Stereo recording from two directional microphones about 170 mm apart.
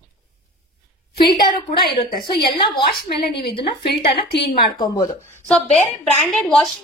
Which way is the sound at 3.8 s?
75° left (ahead or behind).